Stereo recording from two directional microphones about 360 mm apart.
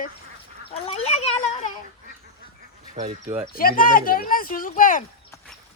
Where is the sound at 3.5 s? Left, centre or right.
Left.